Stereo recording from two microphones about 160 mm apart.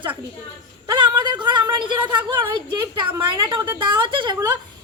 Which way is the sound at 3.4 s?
25° right (ahead or behind).